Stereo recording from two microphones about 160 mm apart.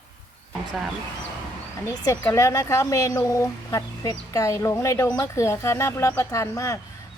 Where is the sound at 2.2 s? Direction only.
20° left (ahead or behind).